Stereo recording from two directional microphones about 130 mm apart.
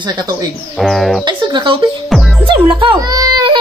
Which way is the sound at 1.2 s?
35° right (ahead or behind).